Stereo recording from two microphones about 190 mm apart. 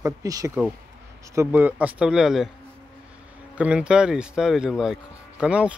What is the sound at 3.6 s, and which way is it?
Speech, 5° right (ahead or behind).